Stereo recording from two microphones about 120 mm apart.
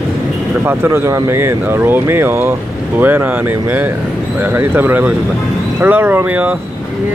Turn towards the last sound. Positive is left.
turn(degrees=-15)  # may be behind; listen again after turning